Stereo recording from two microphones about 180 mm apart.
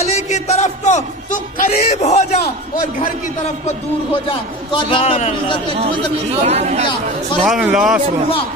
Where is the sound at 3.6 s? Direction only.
30° left (ahead or behind).